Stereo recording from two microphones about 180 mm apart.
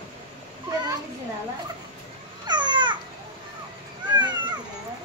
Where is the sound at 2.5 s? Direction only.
25° right (ahead or behind).